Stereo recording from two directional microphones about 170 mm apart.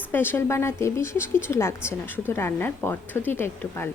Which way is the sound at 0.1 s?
15° left (ahead or behind).